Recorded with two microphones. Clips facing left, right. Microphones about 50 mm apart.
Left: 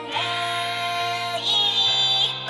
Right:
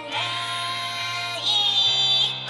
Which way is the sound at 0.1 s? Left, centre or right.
Centre.